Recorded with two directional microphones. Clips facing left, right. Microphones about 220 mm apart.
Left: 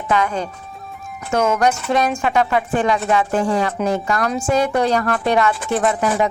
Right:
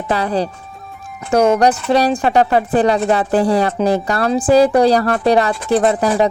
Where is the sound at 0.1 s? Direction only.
35° right (ahead or behind).